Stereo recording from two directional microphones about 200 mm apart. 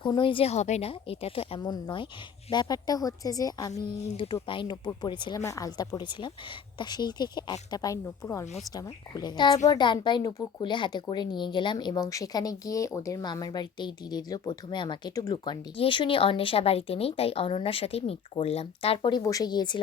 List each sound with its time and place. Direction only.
0.0 s speech: 25° left (ahead or behind)